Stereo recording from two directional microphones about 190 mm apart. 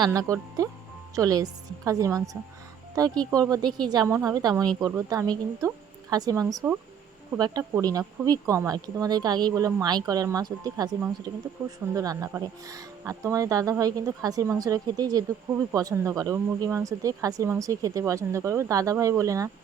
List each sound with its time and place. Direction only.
0.0 s speech: 15° right (ahead or behind)